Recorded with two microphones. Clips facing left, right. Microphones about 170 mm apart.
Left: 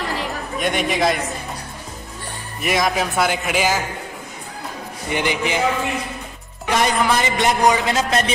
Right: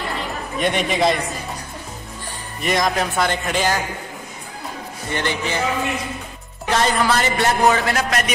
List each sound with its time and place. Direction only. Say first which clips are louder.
0.6 s a man's voice: right 1 dB; centre (ahead or behind)
2.6 s a man's voice: even; 5° left (ahead or behind)
5.1 s a man's voice: left 2 dB; 15° left (ahead or behind)
6.7 s a man's voice: even; 15° left (ahead or behind)